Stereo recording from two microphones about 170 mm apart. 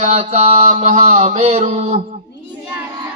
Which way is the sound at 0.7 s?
50° right (ahead or behind).